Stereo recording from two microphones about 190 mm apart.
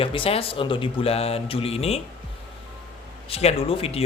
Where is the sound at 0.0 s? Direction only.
30° left (ahead or behind).